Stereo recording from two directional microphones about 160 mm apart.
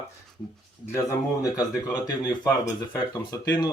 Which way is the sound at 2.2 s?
25° left (ahead or behind).